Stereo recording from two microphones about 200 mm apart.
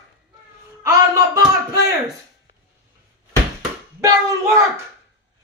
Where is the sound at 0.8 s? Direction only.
15° right (ahead or behind).